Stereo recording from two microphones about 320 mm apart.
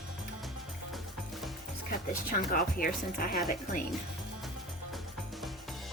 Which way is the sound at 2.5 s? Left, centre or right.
Left.